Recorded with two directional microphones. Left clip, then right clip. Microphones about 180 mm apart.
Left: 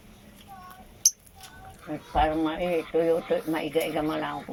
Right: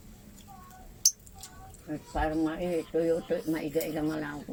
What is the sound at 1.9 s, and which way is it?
Cutlery, 5° right (ahead or behind).